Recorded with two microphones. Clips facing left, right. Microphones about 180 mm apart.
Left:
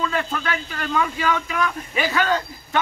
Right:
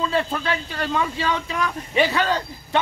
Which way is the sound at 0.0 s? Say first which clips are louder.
Right 2 dB; 30° right (ahead or behind).